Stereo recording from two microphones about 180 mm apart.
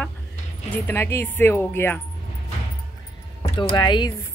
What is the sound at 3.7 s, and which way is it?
Speech, 25° left (ahead or behind).